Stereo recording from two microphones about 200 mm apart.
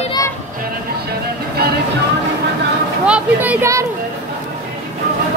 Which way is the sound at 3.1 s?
5° right (ahead or behind).